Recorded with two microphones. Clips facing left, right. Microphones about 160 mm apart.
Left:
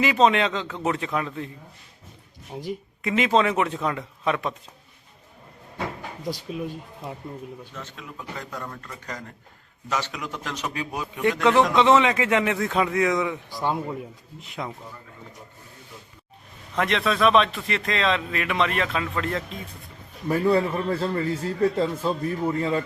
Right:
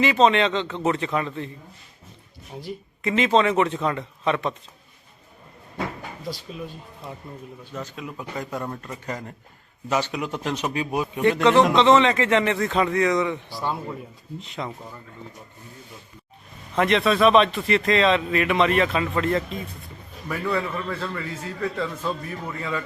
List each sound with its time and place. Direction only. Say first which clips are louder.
0.0 s speech: right 1 dB; 5° left (ahead or behind)
3.0 s speech: right 1 dB; centre (ahead or behind)
6.2 s a man's voice: left 4 dB; 15° left (ahead or behind)
7.9 s speech: right 4 dB; 20° right (ahead or behind)
11.8 s speech: right 1 dB; 5° left (ahead or behind)
13.5 s a man's voice: left 2 dB; 15° left (ahead or behind)
14.6 s speech: right 1 dB; centre (ahead or behind)
16.7 s speech: right 4 dB; centre (ahead or behind)
20.2 s a man's voice: left 5 dB; 30° left (ahead or behind)